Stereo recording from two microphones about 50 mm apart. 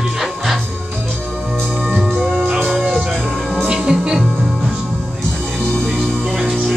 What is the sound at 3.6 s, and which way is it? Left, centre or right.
Music, centre.